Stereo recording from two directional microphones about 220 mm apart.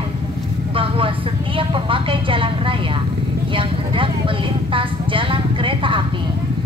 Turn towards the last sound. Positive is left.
turn(degrees=-25)  # may be behind; listen again after turning